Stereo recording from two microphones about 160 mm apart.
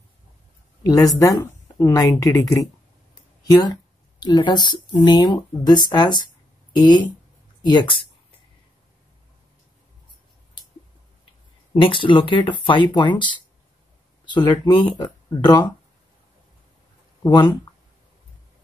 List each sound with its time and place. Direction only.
0.8 s speech: 25° left (ahead or behind)
11.7 s speech: 30° left (ahead or behind)
17.2 s speech: 25° left (ahead or behind)